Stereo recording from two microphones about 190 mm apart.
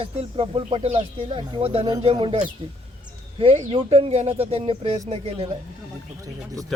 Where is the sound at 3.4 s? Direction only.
30° right (ahead or behind).